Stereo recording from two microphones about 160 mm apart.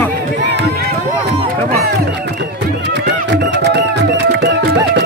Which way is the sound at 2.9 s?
90° right.